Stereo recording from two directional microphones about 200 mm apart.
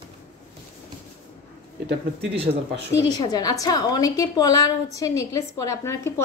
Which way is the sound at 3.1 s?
20° left (ahead or behind).